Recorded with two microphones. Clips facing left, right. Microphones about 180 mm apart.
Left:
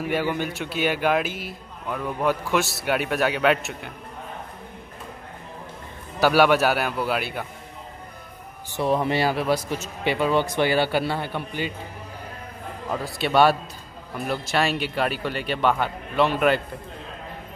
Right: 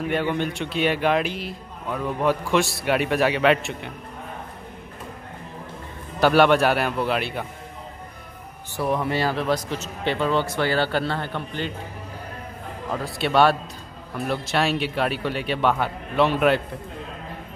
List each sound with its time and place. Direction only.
0.0 s a man's voice: 5° left (ahead or behind)
6.1 s a man's voice: 5° left (ahead or behind)
8.7 s speech: 25° left (ahead or behind)
9.1 s speech: 10° left (ahead or behind)
12.9 s a man's voice: centre (ahead or behind)